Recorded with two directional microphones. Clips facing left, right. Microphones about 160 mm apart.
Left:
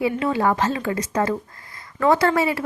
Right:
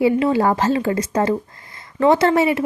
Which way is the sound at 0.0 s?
30° right (ahead or behind).